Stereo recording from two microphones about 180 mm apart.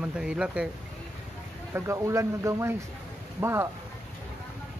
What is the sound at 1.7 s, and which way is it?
Speech, 15° right (ahead or behind).